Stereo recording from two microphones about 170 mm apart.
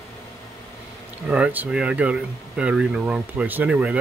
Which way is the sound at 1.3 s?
5° right (ahead or behind).